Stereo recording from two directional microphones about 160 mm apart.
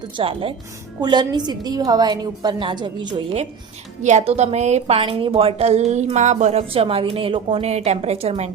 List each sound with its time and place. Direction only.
0.2 s a woman's voice: 35° right (ahead or behind)
4.0 s a woman's voice: 45° right (ahead or behind)